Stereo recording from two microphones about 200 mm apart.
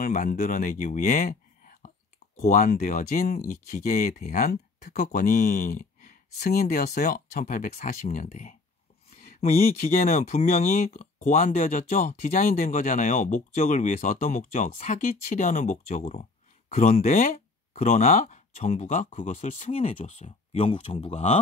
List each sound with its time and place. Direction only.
0.0 s speech: 40° left (ahead or behind)